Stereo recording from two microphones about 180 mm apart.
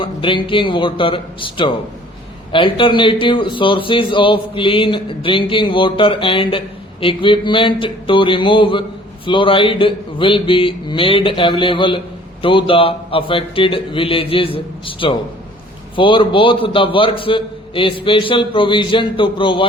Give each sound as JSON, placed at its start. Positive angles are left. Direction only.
{"t": 0.0, "sound": "a man's voice", "side_deg": 30}